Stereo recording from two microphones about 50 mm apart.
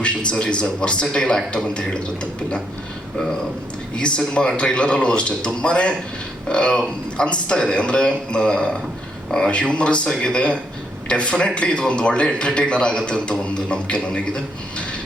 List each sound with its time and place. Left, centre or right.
0.0 s a man's voice: left
3.9 s a man's voice: centre